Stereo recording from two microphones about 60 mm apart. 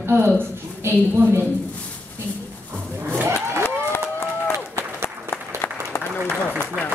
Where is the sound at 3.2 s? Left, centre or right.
Right.